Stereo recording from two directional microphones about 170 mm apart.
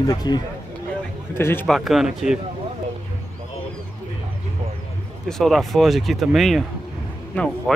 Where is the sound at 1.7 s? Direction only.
Centre (ahead or behind).